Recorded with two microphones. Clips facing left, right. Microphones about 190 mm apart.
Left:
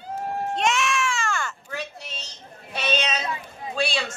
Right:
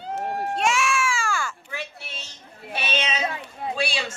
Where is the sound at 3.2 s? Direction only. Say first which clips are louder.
Right 3 dB; 65° right (ahead or behind).